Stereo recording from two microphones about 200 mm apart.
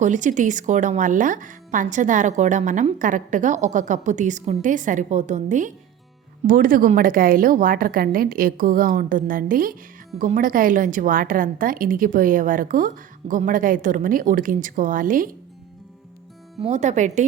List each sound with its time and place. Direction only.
0.0 s speech: 40° right (ahead or behind)
16.6 s speech: 35° right (ahead or behind)